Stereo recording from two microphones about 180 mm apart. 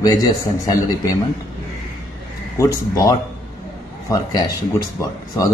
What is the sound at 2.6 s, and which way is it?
A man's voice, 20° left (ahead or behind).